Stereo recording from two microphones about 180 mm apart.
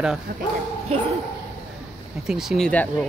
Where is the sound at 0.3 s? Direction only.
50° right (ahead or behind).